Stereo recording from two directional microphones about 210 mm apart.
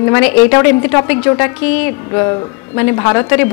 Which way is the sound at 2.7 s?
15° left (ahead or behind).